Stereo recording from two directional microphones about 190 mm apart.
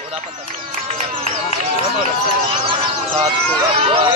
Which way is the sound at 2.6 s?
30° right (ahead or behind).